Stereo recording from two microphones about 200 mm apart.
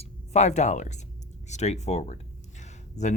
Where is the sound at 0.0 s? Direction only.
35° left (ahead or behind).